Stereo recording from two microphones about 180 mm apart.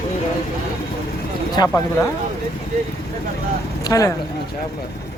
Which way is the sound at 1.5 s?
20° left (ahead or behind).